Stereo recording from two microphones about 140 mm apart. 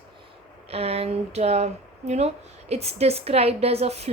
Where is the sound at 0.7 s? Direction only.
45° right (ahead or behind).